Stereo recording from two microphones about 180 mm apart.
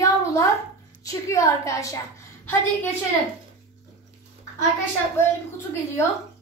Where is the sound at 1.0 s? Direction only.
20° left (ahead or behind).